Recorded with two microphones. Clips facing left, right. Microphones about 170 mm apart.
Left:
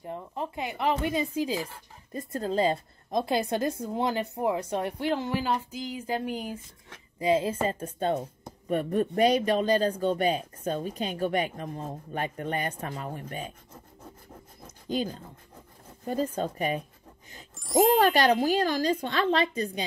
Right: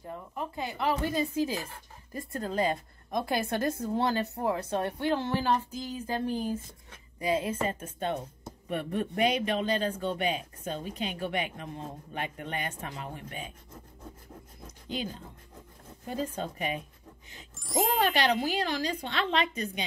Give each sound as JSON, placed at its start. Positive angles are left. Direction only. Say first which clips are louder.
{"t": 0.0, "sound": "a woman's voice", "louder": "left 3 dB", "side_deg": 25}
{"t": 7.2, "sound": "a woman's voice", "louder": "left 4 dB", "side_deg": 25}
{"t": 14.9, "sound": "speech", "louder": "left 6 dB", "side_deg": 40}
{"t": 17.6, "sound": "a child's voice", "louder": "left 7 dB", "side_deg": 0}
{"t": 17.9, "sound": "a woman's voice", "louder": "left 5 dB", "side_deg": 40}